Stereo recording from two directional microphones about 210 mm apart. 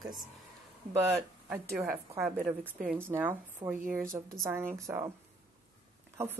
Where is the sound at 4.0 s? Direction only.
40° right (ahead or behind).